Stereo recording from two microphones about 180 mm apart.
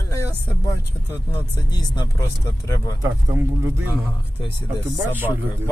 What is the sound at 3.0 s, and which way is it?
Speech, 15° right (ahead or behind).